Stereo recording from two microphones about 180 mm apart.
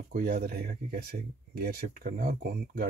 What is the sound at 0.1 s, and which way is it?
Speech, 50° right (ahead or behind).